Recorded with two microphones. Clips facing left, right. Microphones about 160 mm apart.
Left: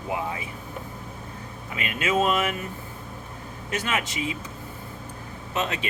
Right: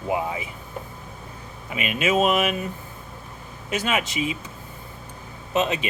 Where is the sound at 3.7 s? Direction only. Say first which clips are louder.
Right 3 dB; 15° right (ahead or behind).